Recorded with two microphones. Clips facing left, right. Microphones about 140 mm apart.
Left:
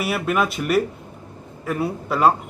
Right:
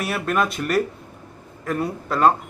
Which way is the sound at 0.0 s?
5° left (ahead or behind).